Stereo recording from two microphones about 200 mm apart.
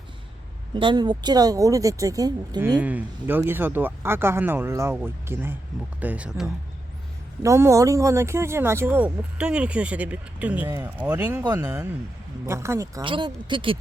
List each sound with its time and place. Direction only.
0.7 s speech: 25° right (ahead or behind)
2.7 s speech: 5° right (ahead or behind)
7.4 s speech: 15° right (ahead or behind)